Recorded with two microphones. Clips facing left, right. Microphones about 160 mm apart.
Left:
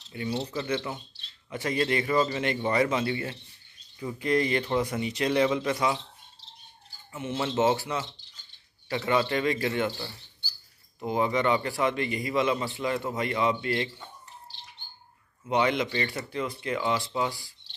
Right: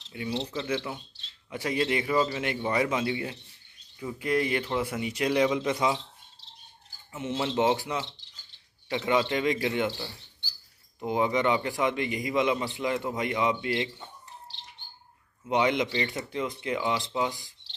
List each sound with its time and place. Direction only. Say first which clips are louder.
0.1 s speech: left 1 dB; 5° right (ahead or behind)
0.4 s speech: left 1 dB; 5° left (ahead or behind)
0.7 s a man's voice: left 1 dB; 5° right (ahead or behind)
7.1 s a man's voice: even; 20° right (ahead or behind)
11.0 s a man's voice: even; 15° right (ahead or behind)
15.4 s a man's voice: even; 15° right (ahead or behind)